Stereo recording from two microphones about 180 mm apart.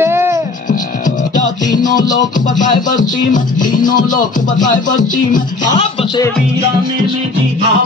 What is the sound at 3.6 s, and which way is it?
Music, 50° left (ahead or behind).